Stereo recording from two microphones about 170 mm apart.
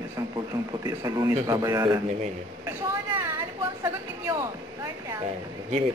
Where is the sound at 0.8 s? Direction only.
20° right (ahead or behind).